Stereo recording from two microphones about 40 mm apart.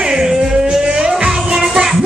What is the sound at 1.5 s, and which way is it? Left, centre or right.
Music, centre.